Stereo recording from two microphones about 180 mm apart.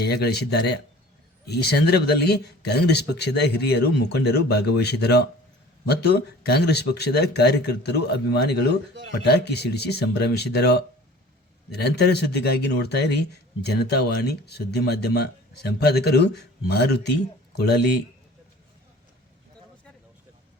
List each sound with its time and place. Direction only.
0.0 s speech: 65° left (ahead or behind)